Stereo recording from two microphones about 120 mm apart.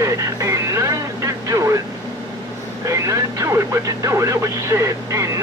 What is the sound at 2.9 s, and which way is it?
Speech, 25° right (ahead or behind).